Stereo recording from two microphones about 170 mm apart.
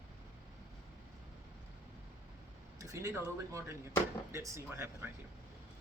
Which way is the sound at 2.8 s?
20° right (ahead or behind).